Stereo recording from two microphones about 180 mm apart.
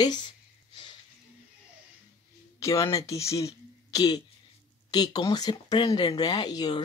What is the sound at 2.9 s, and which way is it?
Speech, 15° left (ahead or behind).